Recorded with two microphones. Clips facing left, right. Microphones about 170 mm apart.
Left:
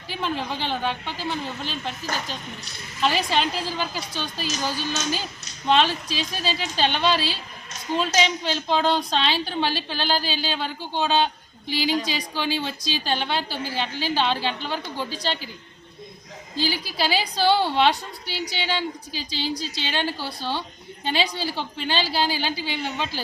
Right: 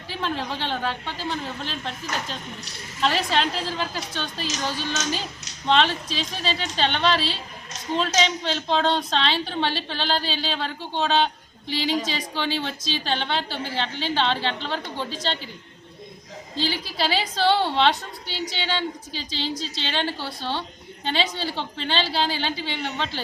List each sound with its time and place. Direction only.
0.1 s a woman's voice: 5° left (ahead or behind)
3.0 s a woman's voice: centre (ahead or behind)
16.6 s a woman's voice: 5° left (ahead or behind)